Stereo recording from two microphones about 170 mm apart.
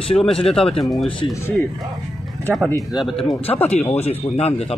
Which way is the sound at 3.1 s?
35° left (ahead or behind).